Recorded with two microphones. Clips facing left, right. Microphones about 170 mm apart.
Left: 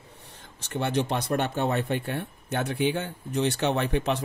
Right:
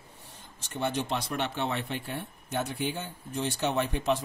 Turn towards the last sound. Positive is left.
turn(degrees=65)  # may be behind; listen again after turning